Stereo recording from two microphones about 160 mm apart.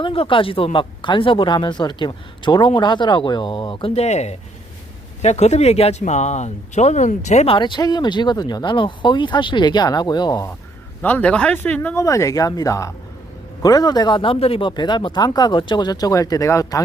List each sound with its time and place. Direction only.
0.0 s speech: 35° left (ahead or behind)
11.0 s speech: 10° left (ahead or behind)